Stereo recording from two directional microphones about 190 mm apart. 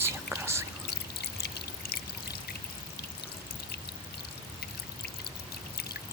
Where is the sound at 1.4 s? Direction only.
55° left (ahead or behind).